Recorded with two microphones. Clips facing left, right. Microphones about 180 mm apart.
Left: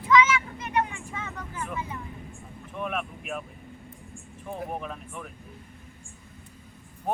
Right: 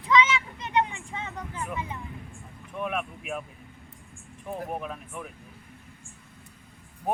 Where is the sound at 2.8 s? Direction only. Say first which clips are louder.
Right 1 dB; centre (ahead or behind).